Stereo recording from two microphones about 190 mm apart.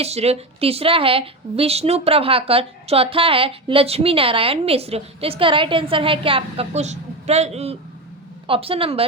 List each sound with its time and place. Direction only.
0.0 s a woman's voice: 35° right (ahead or behind)